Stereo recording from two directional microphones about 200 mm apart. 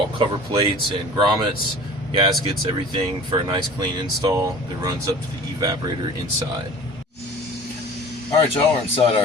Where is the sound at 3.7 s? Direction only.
20° right (ahead or behind).